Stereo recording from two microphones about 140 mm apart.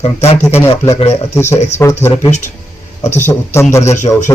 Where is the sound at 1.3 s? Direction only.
20° left (ahead or behind).